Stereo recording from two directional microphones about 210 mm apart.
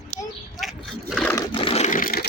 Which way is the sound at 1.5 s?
25° left (ahead or behind).